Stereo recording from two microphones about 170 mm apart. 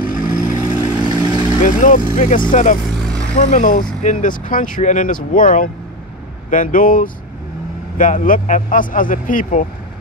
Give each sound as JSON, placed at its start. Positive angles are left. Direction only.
{"t": 0.0, "sound": "vehicle", "side_deg": 50}
{"t": 0.6, "sound": "vehicle", "side_deg": -25}
{"t": 1.6, "sound": "speech", "side_deg": 50}
{"t": 3.0, "sound": "vehicle", "side_deg": 5}
{"t": 3.3, "sound": "speech", "side_deg": 45}